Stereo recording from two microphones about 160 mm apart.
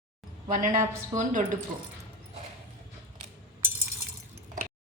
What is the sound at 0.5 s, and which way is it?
Speech, 60° right (ahead or behind).